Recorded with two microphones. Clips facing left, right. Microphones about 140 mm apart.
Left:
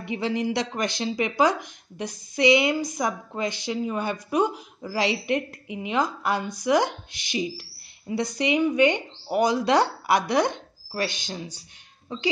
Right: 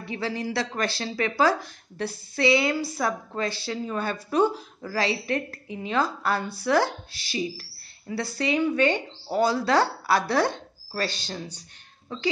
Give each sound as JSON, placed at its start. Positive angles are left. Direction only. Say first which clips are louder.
{"t": 0.0, "sound": "speech", "louder": "left 4 dB", "side_deg": 20}